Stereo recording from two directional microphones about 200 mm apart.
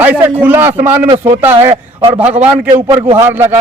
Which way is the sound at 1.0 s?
30° right (ahead or behind).